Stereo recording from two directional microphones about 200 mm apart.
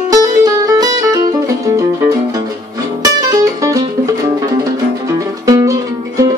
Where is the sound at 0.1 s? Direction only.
20° right (ahead or behind).